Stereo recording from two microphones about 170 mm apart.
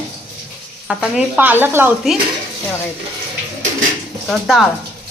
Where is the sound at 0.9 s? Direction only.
5° right (ahead or behind).